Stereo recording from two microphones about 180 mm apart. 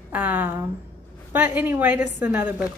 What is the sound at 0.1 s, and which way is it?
A woman's voice, 10° right (ahead or behind).